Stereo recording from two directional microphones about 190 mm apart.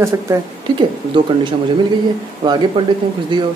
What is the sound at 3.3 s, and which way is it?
Speech, 25° right (ahead or behind).